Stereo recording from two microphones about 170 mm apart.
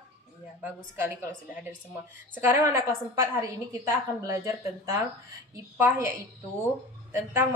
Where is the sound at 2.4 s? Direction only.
10° right (ahead or behind).